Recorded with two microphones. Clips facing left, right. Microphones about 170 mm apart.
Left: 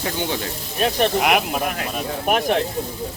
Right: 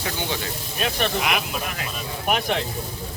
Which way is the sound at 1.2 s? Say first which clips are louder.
Left 6 dB; 50° left (ahead or behind).